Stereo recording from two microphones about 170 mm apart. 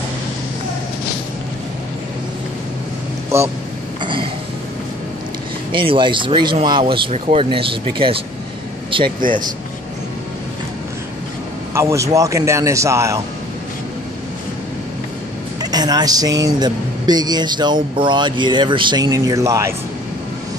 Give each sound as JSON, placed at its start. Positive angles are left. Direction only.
{"t": 4.0, "sound": "a sound", "side_deg": -30}
{"t": 5.7, "sound": "speech", "side_deg": -30}
{"t": 9.0, "sound": "speech", "side_deg": -55}
{"t": 11.7, "sound": "speech", "side_deg": -15}
{"t": 15.6, "sound": "speech", "side_deg": -25}